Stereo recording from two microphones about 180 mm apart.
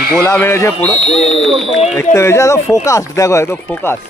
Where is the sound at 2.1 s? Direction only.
15° left (ahead or behind).